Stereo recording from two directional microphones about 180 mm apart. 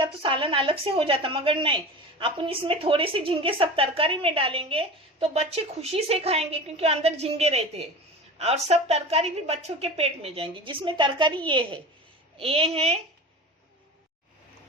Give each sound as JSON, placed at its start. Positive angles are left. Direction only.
{"t": 0.0, "sound": "a woman's voice", "side_deg": -30}